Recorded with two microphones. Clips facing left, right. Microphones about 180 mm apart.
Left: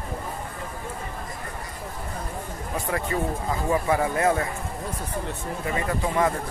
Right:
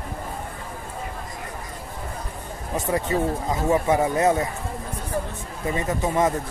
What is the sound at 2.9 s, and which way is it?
Speech, 20° right (ahead or behind).